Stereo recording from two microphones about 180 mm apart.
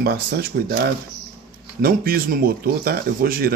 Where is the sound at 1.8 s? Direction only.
55° right (ahead or behind).